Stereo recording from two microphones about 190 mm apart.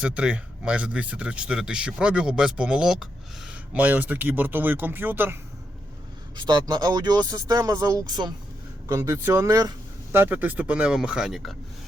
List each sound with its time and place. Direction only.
0.0 s speech: 5° right (ahead or behind)
6.3 s speech: 25° right (ahead or behind); by 11.5 s centre (ahead or behind)